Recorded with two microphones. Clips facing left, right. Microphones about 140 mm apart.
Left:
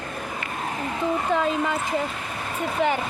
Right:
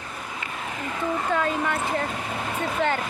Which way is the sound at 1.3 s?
15° left (ahead or behind).